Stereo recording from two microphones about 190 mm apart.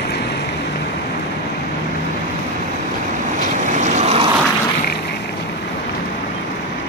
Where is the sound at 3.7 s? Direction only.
40° right (ahead or behind).